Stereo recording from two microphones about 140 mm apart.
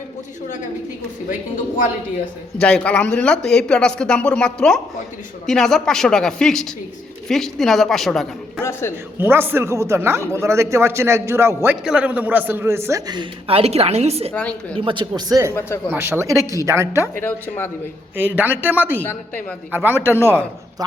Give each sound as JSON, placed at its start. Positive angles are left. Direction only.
{"t": 1.3, "sound": "a woman's voice", "side_deg": 70}
{"t": 2.6, "sound": "speech", "side_deg": 5}
{"t": 9.1, "sound": "a man's voice", "side_deg": -15}
{"t": 13.5, "sound": "a woman's voice", "side_deg": -45}
{"t": 14.3, "sound": "speech", "side_deg": 10}
{"t": 14.8, "sound": "a man's voice", "side_deg": -35}
{"t": 17.2, "sound": "speech", "side_deg": 15}
{"t": 18.2, "sound": "a man's voice", "side_deg": -10}
{"t": 19.0, "sound": "speech", "side_deg": 15}
{"t": 19.7, "sound": "a man's voice", "side_deg": -15}